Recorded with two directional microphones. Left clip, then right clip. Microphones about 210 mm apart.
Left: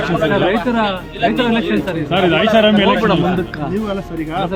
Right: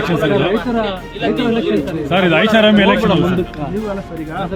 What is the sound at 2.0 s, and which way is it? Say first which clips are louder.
Speech: right 1 dB; 35° right (ahead or behind).